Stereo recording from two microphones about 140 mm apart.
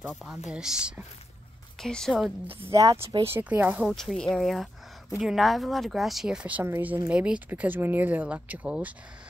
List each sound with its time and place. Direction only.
0.1 s speech: centre (ahead or behind)
1.8 s speech: 5° left (ahead or behind)
2.7 s speech: 25° right (ahead or behind)
3.3 s speech: 15° right (ahead or behind)
3.9 s speech: 5° left (ahead or behind)